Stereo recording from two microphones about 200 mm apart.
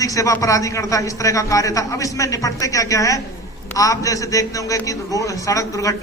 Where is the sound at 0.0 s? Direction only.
15° left (ahead or behind).